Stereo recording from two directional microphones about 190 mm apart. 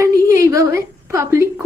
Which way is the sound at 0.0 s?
15° right (ahead or behind).